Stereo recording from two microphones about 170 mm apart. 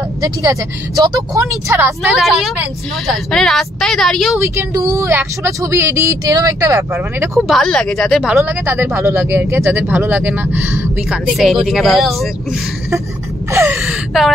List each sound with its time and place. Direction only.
0.2 s speech: 20° right (ahead or behind)
2.1 s speech: centre (ahead or behind)
4.4 s speech: 20° right (ahead or behind)
7.3 s speech: centre (ahead or behind)
11.1 s speech: centre (ahead or behind)
13.5 s gasp: 15° right (ahead or behind)
13.7 s gasp: centre (ahead or behind)